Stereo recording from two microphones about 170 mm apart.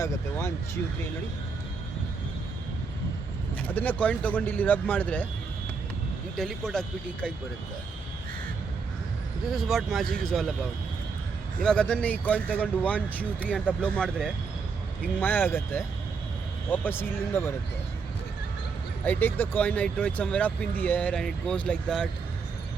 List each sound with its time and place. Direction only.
0.0 s speech: 15° left (ahead or behind)
3.6 s speech: 10° left (ahead or behind)
6.3 s speech: centre (ahead or behind)
9.5 s speech: centre (ahead or behind)
11.6 s speech: 5° left (ahead or behind)
19.0 s speech: 10° left (ahead or behind)